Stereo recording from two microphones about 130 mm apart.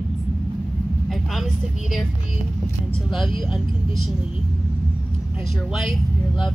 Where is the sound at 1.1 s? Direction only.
Centre (ahead or behind).